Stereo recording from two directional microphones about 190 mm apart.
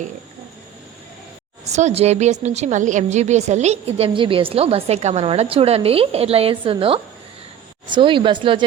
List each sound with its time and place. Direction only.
1.6 s a woman's voice: 35° right (ahead or behind)